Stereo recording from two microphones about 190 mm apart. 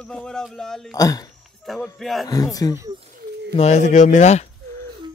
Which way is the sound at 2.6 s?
20° left (ahead or behind).